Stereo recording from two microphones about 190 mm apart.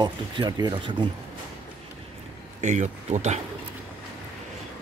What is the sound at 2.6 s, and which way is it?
Speech, 40° right (ahead or behind).